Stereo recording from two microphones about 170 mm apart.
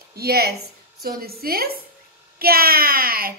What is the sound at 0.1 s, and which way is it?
A woman's voice, 65° right (ahead or behind).